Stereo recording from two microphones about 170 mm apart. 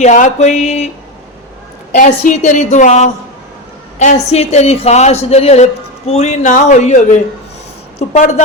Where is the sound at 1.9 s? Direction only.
50° left (ahead or behind).